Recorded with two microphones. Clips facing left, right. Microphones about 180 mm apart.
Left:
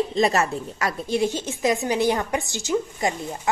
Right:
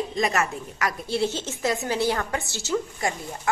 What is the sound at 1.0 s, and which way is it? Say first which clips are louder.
A woman's voice: left 3 dB; 15° left (ahead or behind).